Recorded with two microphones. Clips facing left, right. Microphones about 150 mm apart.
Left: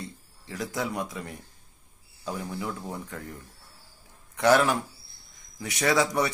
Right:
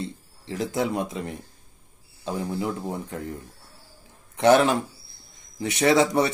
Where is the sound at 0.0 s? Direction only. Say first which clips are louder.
Right 7 dB; 25° right (ahead or behind).